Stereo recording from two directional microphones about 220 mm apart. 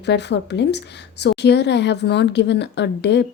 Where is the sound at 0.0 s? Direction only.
50° left (ahead or behind).